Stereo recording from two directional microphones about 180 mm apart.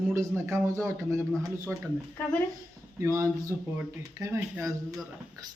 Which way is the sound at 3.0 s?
15° right (ahead or behind).